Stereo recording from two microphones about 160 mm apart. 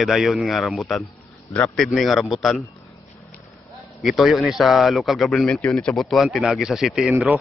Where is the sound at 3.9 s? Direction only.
Centre (ahead or behind).